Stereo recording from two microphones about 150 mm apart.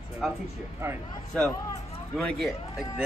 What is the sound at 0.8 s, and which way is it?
Speech, 20° right (ahead or behind).